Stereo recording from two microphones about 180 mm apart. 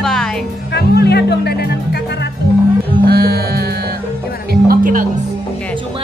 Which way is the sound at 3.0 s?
60° right (ahead or behind).